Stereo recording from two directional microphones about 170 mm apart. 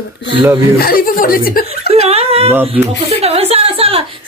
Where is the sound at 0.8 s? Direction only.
60° left (ahead or behind).